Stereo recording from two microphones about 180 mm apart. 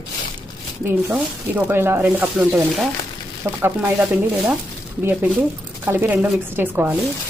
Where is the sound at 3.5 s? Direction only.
20° right (ahead or behind).